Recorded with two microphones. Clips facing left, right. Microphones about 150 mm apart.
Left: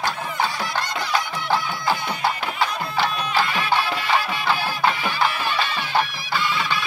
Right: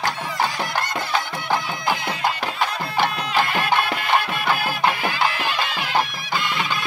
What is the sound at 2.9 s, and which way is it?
Music, 55° right (ahead or behind).